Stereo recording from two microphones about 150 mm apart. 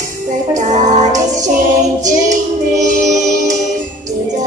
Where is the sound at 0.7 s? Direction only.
55° right (ahead or behind).